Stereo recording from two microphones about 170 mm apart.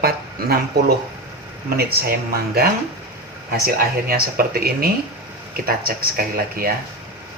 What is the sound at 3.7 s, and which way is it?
Speech, 60° right (ahead or behind).